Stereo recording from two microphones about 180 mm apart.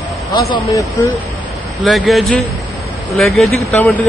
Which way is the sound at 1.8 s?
Centre (ahead or behind).